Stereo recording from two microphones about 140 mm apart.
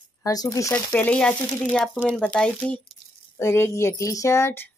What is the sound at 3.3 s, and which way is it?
Speech, 20° left (ahead or behind).